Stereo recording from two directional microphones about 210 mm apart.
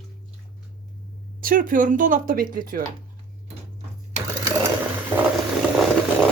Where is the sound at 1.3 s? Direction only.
40° right (ahead or behind).